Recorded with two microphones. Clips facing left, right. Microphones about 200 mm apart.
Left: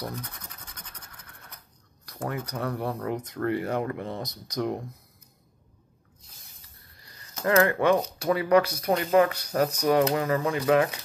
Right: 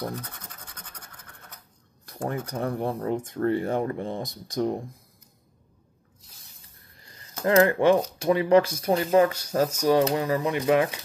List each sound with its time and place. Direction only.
2.0 s a sound: 30° right (ahead or behind)
2.5 s speech: 30° right (ahead or behind)
7.0 s speech: 25° right (ahead or behind)
8.8 s speech: 35° right (ahead or behind); by 11.0 s 20° right (ahead or behind)